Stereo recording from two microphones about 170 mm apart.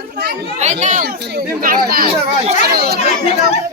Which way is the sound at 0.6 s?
45° right (ahead or behind).